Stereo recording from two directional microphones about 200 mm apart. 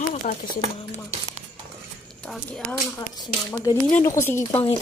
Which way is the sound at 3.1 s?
20° left (ahead or behind).